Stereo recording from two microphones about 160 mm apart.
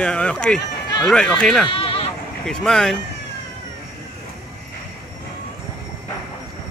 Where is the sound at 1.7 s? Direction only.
35° left (ahead or behind).